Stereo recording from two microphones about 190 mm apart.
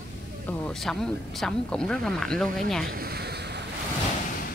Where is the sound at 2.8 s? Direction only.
55° right (ahead or behind).